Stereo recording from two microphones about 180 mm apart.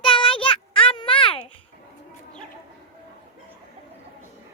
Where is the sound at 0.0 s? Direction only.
30° left (ahead or behind).